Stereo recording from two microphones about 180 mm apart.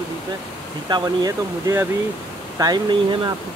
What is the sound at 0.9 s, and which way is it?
Speech, 20° right (ahead or behind).